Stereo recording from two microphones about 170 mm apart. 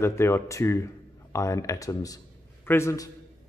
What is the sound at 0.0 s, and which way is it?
A man's voice, 15° left (ahead or behind).